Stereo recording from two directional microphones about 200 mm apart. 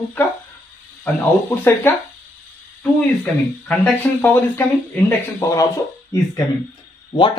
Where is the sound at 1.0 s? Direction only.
10° left (ahead or behind).